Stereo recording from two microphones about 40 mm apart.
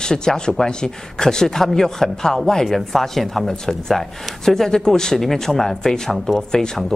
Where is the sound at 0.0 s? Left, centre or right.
Centre.